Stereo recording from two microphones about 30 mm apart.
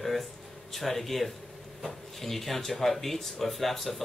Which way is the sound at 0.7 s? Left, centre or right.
Centre.